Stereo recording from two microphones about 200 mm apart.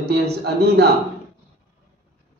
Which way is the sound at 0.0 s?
55° right (ahead or behind).